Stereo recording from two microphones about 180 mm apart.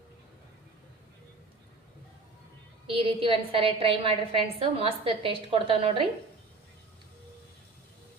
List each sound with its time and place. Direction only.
2.8 s a woman's voice: 30° right (ahead or behind)